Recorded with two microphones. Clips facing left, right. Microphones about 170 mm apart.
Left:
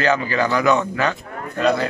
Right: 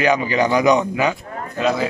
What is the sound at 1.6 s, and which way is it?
Speech, centre (ahead or behind).